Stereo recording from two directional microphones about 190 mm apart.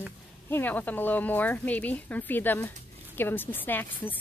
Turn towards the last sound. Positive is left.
turn(degrees=10)  # may be behind; listen again after turning